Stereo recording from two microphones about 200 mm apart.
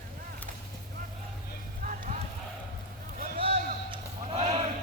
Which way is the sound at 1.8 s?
40° right (ahead or behind).